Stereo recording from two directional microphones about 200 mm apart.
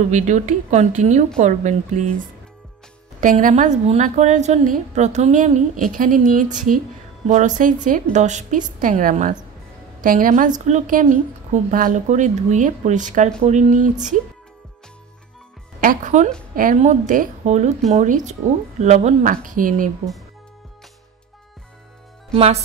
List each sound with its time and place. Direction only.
0.1 s speech: 35° right (ahead or behind)
3.2 s a woman's voice: 40° right (ahead or behind)
15.8 s speech: 40° right (ahead or behind)
22.3 s speech: 30° right (ahead or behind)